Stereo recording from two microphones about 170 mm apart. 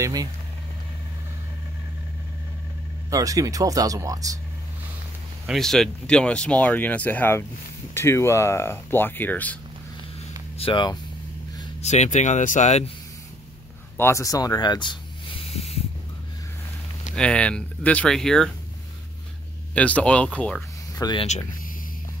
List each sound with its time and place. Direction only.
0.0 s speech: 20° right (ahead or behind)
3.1 s speech: 20° right (ahead or behind)
5.5 s speech: centre (ahead or behind)
10.6 s speech: 30° left (ahead or behind)
11.8 s speech: 45° left (ahead or behind)
13.9 s a sound: 15° left (ahead or behind); by 15.8 s 35° left (ahead or behind)
17.1 s speech: 5° left (ahead or behind)
19.7 s speech: 10° left (ahead or behind)
21.0 s speech: 25° left (ahead or behind)